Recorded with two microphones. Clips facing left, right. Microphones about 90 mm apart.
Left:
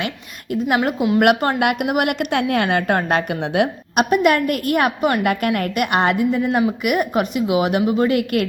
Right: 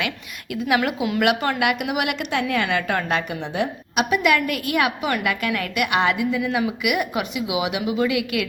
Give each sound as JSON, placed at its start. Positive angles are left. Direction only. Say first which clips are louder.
{"t": 1.2, "sound": "a woman's voice", "louder": "left 3 dB", "side_deg": 50}
{"t": 3.4, "sound": "a woman's voice", "louder": "left 6 dB", "side_deg": 65}